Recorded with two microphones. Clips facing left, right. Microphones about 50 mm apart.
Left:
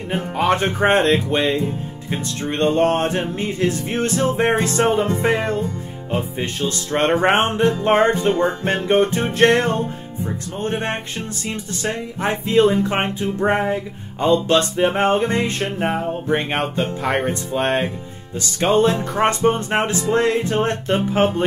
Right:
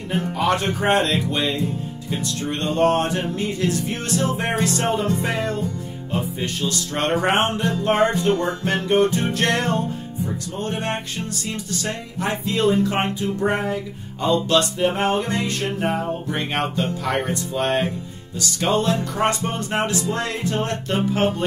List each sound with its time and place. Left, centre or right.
0.1 s speech: left